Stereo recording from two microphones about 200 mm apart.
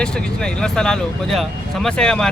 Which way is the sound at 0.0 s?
5° left (ahead or behind).